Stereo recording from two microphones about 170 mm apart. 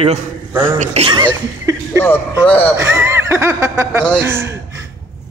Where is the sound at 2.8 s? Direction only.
15° right (ahead or behind).